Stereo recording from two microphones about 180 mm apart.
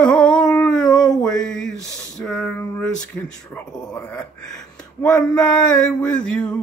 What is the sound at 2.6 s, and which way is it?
Speech, 5° left (ahead or behind).